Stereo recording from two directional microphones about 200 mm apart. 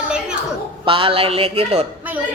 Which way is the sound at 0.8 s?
25° right (ahead or behind).